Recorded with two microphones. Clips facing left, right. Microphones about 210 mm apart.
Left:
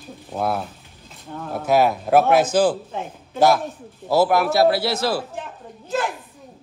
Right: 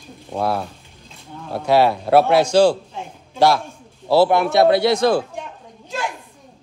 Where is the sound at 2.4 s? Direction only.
5° left (ahead or behind).